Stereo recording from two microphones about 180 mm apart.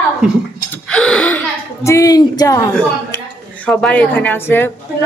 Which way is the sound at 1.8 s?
15° left (ahead or behind).